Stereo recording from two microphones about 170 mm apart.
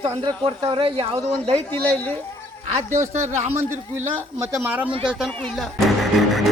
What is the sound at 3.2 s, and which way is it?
Speech, 40° right (ahead or behind).